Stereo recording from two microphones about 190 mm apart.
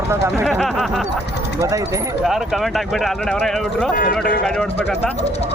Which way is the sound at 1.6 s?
15° right (ahead or behind).